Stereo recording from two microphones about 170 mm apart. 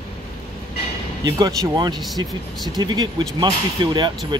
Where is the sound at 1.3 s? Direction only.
25° right (ahead or behind).